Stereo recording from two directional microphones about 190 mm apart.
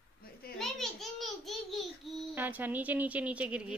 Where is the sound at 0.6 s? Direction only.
Centre (ahead or behind).